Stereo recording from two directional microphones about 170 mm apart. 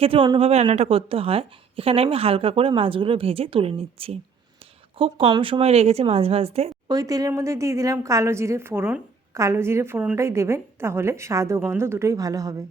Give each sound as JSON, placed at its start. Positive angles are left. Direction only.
{"t": 0.0, "sound": "a woman's voice", "side_deg": -30}
{"t": 6.8, "sound": "a woman's voice", "side_deg": -20}